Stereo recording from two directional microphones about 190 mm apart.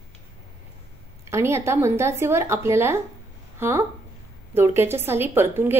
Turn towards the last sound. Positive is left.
turn(degrees=-10)  # may be behind; listen again after turning